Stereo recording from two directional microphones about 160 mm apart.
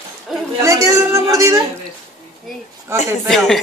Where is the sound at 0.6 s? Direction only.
20° right (ahead or behind).